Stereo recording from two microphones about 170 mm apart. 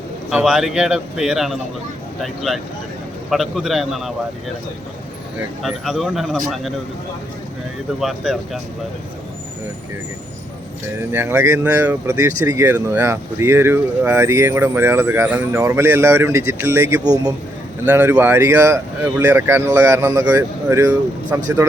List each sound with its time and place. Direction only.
0.3 s a man's voice: 5° right (ahead or behind)
5.6 s a man's voice: centre (ahead or behind)
7.9 s a man's voice: centre (ahead or behind)
11.1 s speech: 15° right (ahead or behind)